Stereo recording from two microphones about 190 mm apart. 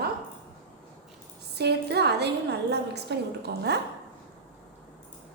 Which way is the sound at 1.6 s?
60° right (ahead or behind).